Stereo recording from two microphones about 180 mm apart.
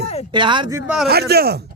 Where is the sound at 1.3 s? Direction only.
60° right (ahead or behind).